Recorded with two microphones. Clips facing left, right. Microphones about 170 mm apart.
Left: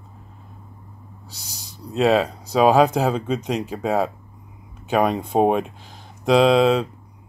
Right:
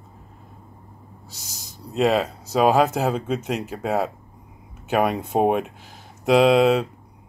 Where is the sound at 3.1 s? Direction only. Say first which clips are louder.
Left 2 dB; 5° right (ahead or behind).